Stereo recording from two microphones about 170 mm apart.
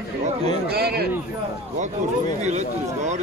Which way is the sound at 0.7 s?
65° right (ahead or behind).